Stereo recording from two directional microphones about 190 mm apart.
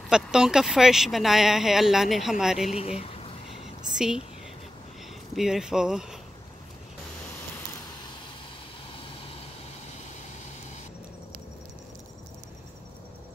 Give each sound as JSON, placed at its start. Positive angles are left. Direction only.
{"t": 0.1, "sound": "speech", "side_deg": -5}
{"t": 2.7, "sound": "speech", "side_deg": 35}
{"t": 5.3, "sound": "speech", "side_deg": 0}